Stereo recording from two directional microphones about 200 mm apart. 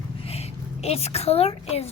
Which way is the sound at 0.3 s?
30° left (ahead or behind).